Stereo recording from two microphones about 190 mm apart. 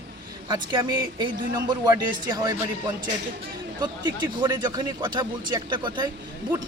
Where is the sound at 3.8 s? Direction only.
20° right (ahead or behind).